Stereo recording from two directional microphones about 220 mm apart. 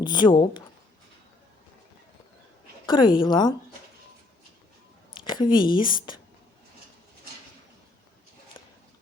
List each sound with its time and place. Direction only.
0.0 s speech: 20° left (ahead or behind)
2.8 s speech: 20° left (ahead or behind)
5.2 s speech: 20° left (ahead or behind)